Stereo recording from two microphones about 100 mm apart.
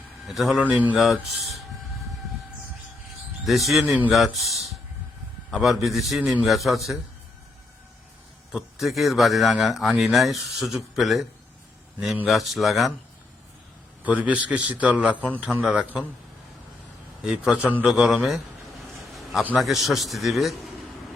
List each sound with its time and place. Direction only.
0.3 s a man's voice: centre (ahead or behind)
0.6 s a man's voice: 15° right (ahead or behind)
0.9 s a man's voice: centre (ahead or behind)
3.4 s a man's voice: centre (ahead or behind)
8.5 s a man's voice: centre (ahead or behind)
14.0 s a man's voice: 15° right (ahead or behind)
17.2 s a man's voice: 10° right (ahead or behind)
19.1 s a sound: centre (ahead or behind)
19.5 s a man's voice: centre (ahead or behind)